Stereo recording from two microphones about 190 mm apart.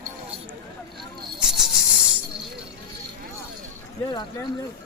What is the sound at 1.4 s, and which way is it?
Cricket, centre (ahead or behind).